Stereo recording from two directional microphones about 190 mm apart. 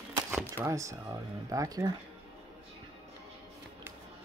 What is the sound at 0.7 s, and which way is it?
Speech, 15° right (ahead or behind).